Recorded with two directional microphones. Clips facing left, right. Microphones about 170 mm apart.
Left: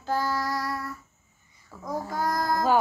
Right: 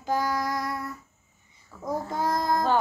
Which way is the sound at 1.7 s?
10° left (ahead or behind).